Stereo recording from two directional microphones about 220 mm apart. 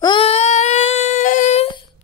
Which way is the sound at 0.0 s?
25° left (ahead or behind).